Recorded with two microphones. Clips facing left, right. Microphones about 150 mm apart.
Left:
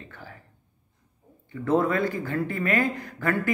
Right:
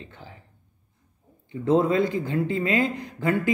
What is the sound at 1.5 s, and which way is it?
Speech, 20° right (ahead or behind).